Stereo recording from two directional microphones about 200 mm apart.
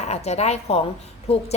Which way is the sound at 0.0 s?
35° left (ahead or behind).